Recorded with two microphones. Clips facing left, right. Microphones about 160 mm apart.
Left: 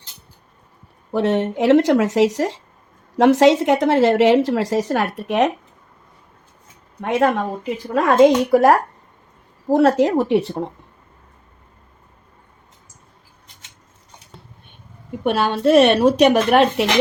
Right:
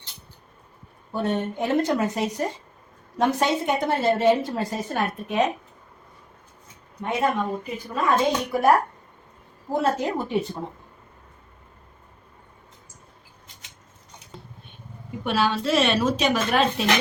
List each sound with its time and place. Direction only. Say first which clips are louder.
1.1 s a woman's voice: left 7 dB; 90° left; by 5.5 s 75° left (ahead or behind)
7.0 s a woman's voice: left 6 dB; 75° left (ahead or behind)
9.7 s speech: left 9 dB; 80° left
15.2 s speech: left 6 dB; 55° left (ahead or behind)